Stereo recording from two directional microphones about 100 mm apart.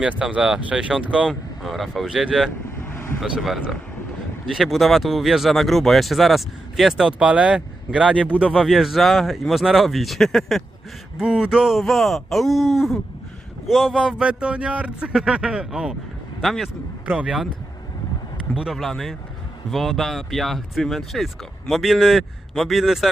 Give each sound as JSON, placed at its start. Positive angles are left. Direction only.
{"t": 0.0, "sound": "speech", "side_deg": -10}
{"t": 1.3, "sound": "speech", "side_deg": 0}
{"t": 2.7, "sound": "vehicle", "side_deg": 25}
{"t": 3.2, "sound": "speech", "side_deg": -5}
{"t": 17.1, "sound": "speech", "side_deg": -10}
{"t": 18.5, "sound": "speech", "side_deg": -5}